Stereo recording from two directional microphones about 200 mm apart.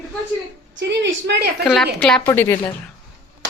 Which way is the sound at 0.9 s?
60° right (ahead or behind).